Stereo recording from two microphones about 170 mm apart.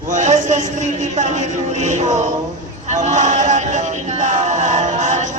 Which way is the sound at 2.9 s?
45° right (ahead or behind).